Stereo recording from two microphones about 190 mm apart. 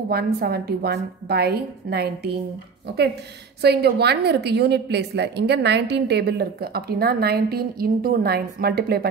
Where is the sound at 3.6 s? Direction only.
60° right (ahead or behind).